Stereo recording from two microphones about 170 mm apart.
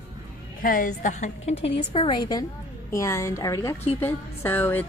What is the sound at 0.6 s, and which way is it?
A woman's voice, 55° left (ahead or behind).